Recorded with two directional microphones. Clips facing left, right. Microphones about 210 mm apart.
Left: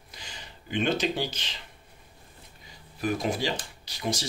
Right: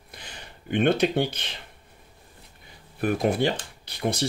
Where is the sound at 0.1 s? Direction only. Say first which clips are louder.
Right 2 dB; 55° right (ahead or behind).